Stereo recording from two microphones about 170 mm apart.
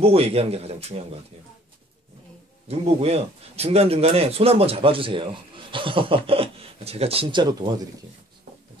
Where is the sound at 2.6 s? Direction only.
35° right (ahead or behind).